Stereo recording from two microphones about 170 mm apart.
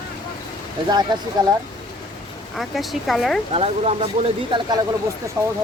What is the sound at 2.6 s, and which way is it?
Speech, centre (ahead or behind).